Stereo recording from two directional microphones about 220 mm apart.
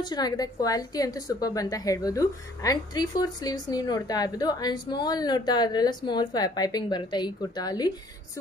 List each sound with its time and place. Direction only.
0.0 s a woman's voice: 20° left (ahead or behind)